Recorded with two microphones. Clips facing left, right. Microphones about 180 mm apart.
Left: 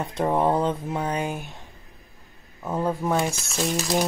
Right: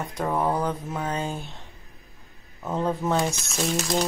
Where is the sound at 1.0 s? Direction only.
15° left (ahead or behind).